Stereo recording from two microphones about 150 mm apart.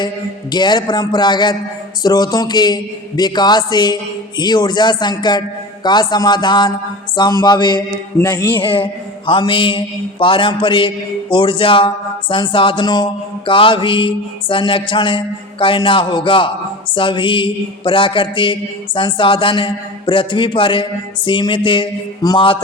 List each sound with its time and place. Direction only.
0.5 s a man's voice: 30° left (ahead or behind)
8.5 s mantra: 35° left (ahead or behind)